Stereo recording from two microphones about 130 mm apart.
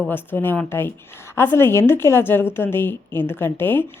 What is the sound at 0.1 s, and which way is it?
A woman's voice, 15° left (ahead or behind).